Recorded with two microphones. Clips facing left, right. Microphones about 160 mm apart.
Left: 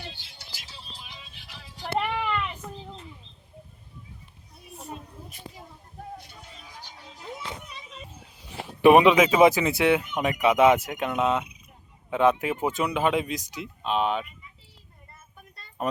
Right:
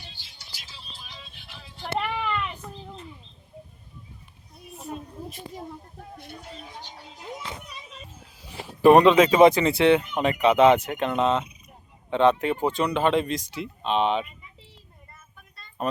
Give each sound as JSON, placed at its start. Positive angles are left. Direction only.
{"t": 2.0, "sound": "a sound", "side_deg": 5}
{"t": 6.7, "sound": "music", "side_deg": -25}
{"t": 8.6, "sound": "speech", "side_deg": 5}